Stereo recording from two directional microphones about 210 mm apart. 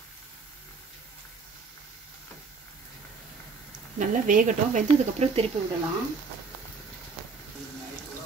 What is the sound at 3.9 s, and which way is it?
Speech, 40° right (ahead or behind).